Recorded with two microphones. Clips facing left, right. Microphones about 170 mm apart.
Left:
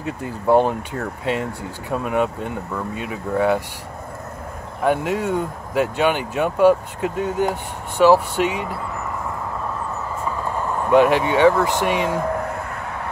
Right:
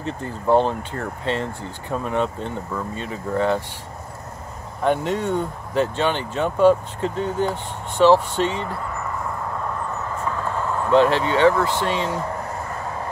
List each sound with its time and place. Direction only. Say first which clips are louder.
0.0 s speech: left 2 dB; 10° left (ahead or behind)
4.8 s speech: left 1 dB; 10° left (ahead or behind)
10.2 s speech: left 1 dB; 10° left (ahead or behind)
12.7 s vehicle: even; 65° left (ahead or behind)